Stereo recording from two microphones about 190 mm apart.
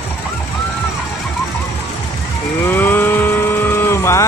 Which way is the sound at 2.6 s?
10° left (ahead or behind).